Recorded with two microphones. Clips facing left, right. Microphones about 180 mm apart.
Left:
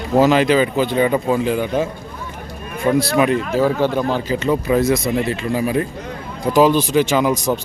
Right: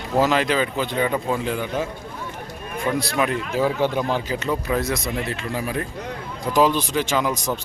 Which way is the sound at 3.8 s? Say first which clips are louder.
Left 4 dB; 20° right (ahead or behind).